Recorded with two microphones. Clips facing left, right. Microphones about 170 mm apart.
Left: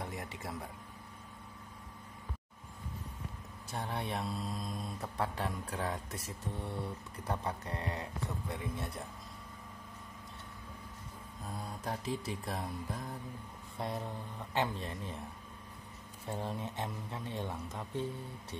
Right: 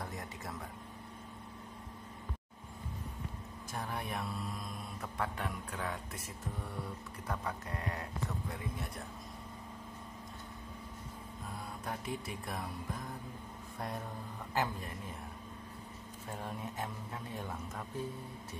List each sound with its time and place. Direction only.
0.0 s a sound: 25° left (ahead or behind)
3.7 s speech: 30° left (ahead or behind)
11.8 s speech: 35° left (ahead or behind)
14.5 s speech: 25° left (ahead or behind)
16.3 s speech: 30° left (ahead or behind)